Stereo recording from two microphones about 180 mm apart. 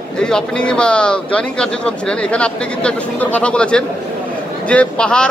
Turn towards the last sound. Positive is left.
turn(degrees=5)  # may be behind; listen again after turning